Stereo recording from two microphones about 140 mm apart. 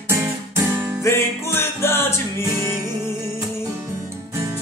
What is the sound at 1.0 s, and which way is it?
Music, 20° left (ahead or behind).